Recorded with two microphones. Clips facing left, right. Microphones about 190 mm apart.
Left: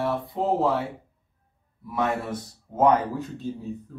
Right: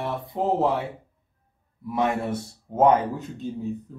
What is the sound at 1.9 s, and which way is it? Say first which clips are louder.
Speech: right 2 dB; 20° right (ahead or behind).